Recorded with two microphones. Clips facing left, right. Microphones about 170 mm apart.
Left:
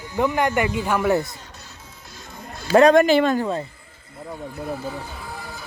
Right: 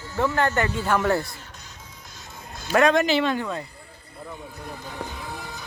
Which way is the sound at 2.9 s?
50° left (ahead or behind).